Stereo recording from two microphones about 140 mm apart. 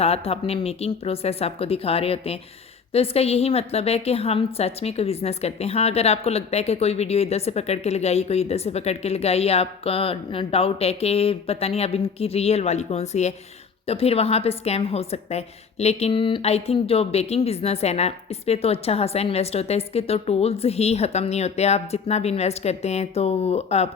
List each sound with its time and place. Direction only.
0.0 s a woman's voice: 45° left (ahead or behind)